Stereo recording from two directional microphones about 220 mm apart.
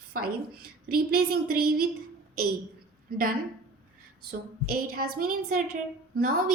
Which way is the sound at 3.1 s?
40° right (ahead or behind).